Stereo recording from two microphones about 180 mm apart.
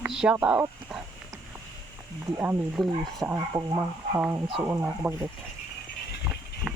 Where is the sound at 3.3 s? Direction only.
20° right (ahead or behind).